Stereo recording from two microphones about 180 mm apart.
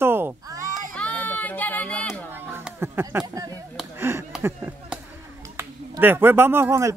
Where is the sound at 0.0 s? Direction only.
15° right (ahead or behind).